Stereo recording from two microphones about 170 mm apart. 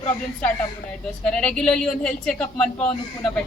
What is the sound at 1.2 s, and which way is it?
A woman's voice, 5° left (ahead or behind).